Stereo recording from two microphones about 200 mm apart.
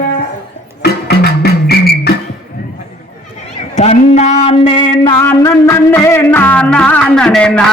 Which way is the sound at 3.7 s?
35° left (ahead or behind).